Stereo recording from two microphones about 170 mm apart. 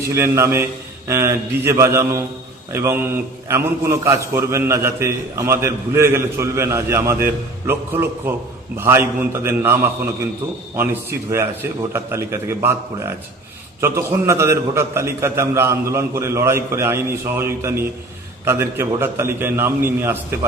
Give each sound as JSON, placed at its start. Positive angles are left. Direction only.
{"t": 0.1, "sound": "a man's voice", "side_deg": -15}